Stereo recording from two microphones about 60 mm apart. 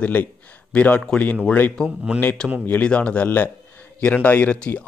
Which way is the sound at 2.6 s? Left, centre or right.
Left.